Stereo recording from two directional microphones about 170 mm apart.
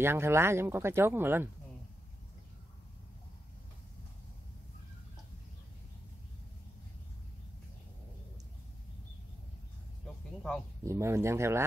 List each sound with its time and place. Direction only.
0.0 s speech: 15° right (ahead or behind)
10.0 s music: 5° left (ahead or behind)
10.8 s speech: 15° right (ahead or behind)